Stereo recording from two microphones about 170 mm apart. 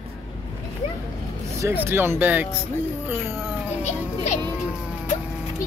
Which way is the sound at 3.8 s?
45° left (ahead or behind).